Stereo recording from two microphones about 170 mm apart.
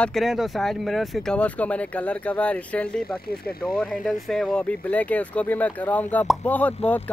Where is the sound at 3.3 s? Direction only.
60° left (ahead or behind).